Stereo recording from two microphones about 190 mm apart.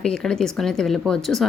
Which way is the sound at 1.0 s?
Centre (ahead or behind).